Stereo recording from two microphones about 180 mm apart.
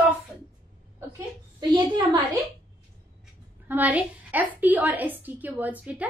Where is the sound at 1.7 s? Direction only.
25° right (ahead or behind).